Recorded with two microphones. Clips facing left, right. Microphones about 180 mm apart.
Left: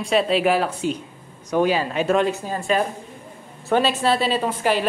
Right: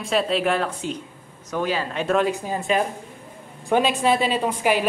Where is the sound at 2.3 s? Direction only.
15° right (ahead or behind).